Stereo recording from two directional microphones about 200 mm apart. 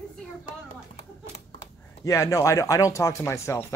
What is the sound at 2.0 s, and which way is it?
Speech, 15° left (ahead or behind).